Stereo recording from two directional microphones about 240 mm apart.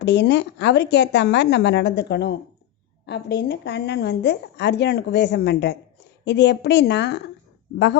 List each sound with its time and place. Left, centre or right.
0.0 s a woman's voice: left